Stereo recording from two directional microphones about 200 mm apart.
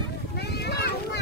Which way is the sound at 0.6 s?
55° left (ahead or behind).